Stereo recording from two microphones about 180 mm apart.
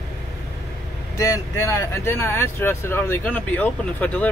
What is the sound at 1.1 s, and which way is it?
Speech, 20° left (ahead or behind).